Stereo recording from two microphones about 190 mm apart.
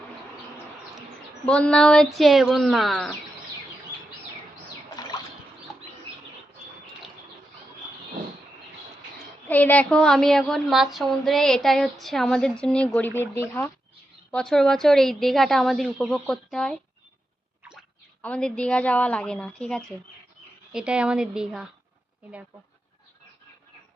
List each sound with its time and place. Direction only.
1.5 s a woman's voice: 5° left (ahead or behind)
5.0 s a sound: 20° left (ahead or behind)
9.5 s a woman's voice: 10° left (ahead or behind)
18.2 s a woman's voice: 5° left (ahead or behind)